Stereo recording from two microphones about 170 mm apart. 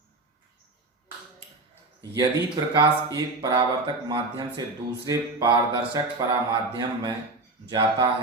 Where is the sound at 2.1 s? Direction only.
25° right (ahead or behind).